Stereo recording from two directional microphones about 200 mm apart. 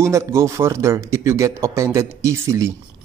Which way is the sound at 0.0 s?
15° right (ahead or behind).